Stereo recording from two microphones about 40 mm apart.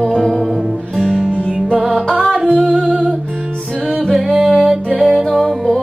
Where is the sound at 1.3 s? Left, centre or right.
Right.